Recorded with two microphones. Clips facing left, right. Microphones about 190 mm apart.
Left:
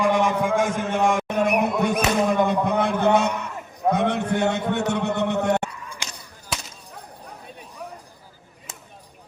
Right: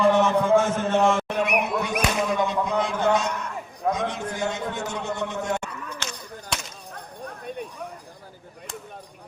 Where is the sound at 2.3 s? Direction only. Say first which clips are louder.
Left 3 dB; 55° left (ahead or behind).